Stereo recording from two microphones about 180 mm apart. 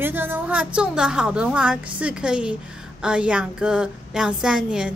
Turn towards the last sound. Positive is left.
turn(degrees=-5)  # may be behind; listen again after turning